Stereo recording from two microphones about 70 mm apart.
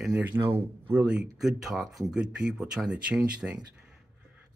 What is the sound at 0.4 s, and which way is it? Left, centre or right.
Speech, right.